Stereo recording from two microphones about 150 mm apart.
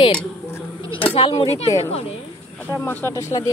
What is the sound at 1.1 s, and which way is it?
Speech, 35° left (ahead or behind).